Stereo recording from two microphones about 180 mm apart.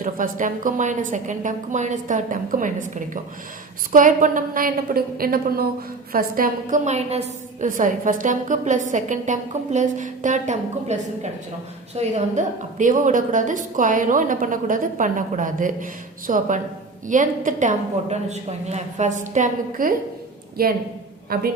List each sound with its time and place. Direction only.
0.0 s a woman's voice: 45° right (ahead or behind)